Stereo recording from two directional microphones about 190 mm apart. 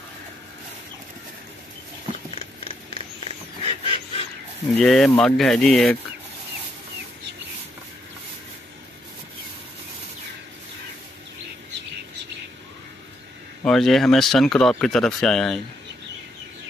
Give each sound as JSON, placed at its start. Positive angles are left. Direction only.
{"t": 3.6, "sound": "goose", "side_deg": 30}
{"t": 4.7, "sound": "speech", "side_deg": 0}
{"t": 13.7, "sound": "speech", "side_deg": 0}